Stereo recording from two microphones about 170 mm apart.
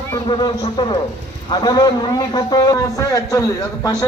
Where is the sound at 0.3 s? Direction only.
25° left (ahead or behind).